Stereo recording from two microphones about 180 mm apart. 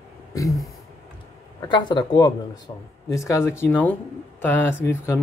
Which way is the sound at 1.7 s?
25° left (ahead or behind).